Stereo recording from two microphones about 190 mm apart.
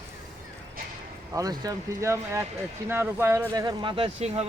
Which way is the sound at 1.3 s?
20° right (ahead or behind).